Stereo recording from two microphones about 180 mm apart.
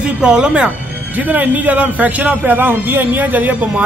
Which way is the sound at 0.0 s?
5° right (ahead or behind).